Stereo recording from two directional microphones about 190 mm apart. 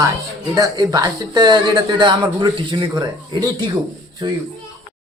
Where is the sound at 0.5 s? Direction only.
20° right (ahead or behind).